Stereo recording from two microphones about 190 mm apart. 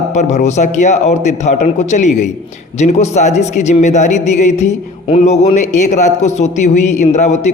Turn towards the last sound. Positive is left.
turn(degrees=35)  # may be behind; listen again after turning